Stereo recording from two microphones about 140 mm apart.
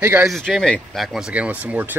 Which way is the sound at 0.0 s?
10° right (ahead or behind).